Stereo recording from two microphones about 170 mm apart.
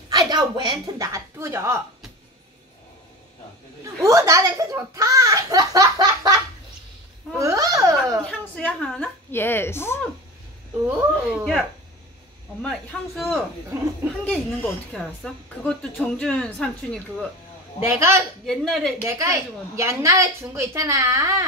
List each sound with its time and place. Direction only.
0.1 s a woman's voice: 25° right (ahead or behind)
3.8 s a child's voice: 20° right (ahead or behind)
7.3 s babbling: 20° right (ahead or behind)
8.3 s a woman's voice: 5° left (ahead or behind)
10.9 s a woman's voice: 10° right (ahead or behind)
12.6 s a woman's voice: 5° left (ahead or behind)
17.8 s a woman's voice: 15° right (ahead or behind)
18.4 s a woman's voice: centre (ahead or behind)
19.0 s a woman's voice: 15° right (ahead or behind)